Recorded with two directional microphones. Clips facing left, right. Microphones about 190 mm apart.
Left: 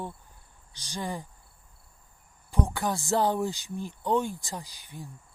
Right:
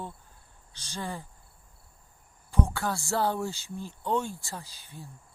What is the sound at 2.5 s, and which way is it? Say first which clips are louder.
Speech: even; 15° left (ahead or behind).